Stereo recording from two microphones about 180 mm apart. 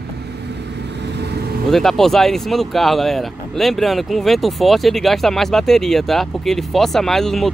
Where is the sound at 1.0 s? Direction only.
70° right (ahead or behind).